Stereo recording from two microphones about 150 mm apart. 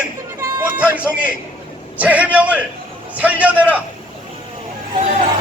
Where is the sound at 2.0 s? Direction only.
10° right (ahead or behind).